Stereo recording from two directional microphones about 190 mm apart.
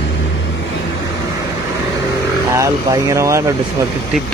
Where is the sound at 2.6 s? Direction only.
15° right (ahead or behind).